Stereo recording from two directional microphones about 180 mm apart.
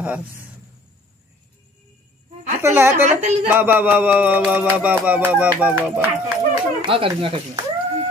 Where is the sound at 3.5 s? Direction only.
10° right (ahead or behind).